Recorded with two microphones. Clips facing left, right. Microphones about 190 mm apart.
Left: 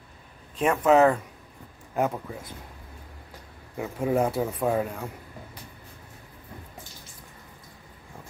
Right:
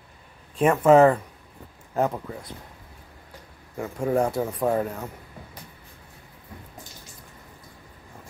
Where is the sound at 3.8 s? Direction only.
5° left (ahead or behind).